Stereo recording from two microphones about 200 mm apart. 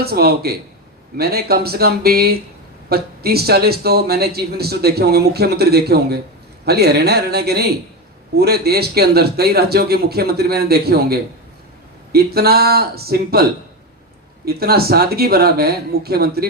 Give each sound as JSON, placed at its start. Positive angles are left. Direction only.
{"t": 0.0, "sound": "a man's voice", "side_deg": -50}
{"t": 14.4, "sound": "a man's voice", "side_deg": -50}